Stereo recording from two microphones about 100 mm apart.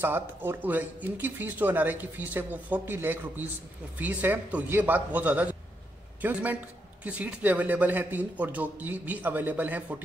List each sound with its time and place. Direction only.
0.0 s a man's voice: 20° right (ahead or behind)